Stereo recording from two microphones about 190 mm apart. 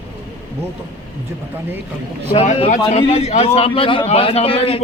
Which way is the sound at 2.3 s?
30° left (ahead or behind).